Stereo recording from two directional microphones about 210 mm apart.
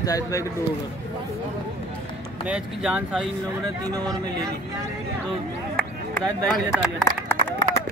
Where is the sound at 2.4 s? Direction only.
5° right (ahead or behind).